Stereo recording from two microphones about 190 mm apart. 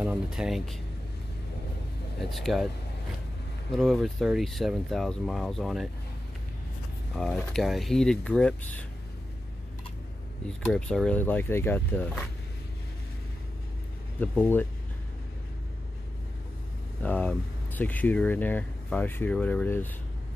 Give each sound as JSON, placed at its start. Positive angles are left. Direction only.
{"t": 0.0, "sound": "speech", "side_deg": -5}
{"t": 2.1, "sound": "speech", "side_deg": 0}
{"t": 3.7, "sound": "speech", "side_deg": 0}
{"t": 7.2, "sound": "speech", "side_deg": 5}
{"t": 10.6, "sound": "speech", "side_deg": 0}
{"t": 14.2, "sound": "speech", "side_deg": 10}
{"t": 17.0, "sound": "speech", "side_deg": 10}